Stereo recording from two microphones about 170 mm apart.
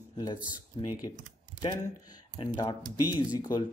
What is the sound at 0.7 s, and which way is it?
Speech, 25° left (ahead or behind).